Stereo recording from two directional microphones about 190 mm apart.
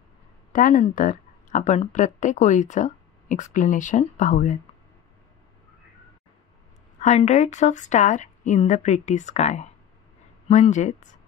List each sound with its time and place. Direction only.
0.5 s speech: 45° left (ahead or behind)
7.0 s speech: 35° left (ahead or behind)